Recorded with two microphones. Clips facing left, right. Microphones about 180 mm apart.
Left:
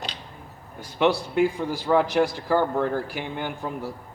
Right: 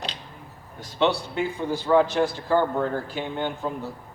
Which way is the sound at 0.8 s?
10° left (ahead or behind).